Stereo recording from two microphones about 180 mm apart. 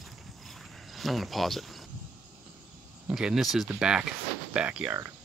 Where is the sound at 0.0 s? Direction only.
Centre (ahead or behind).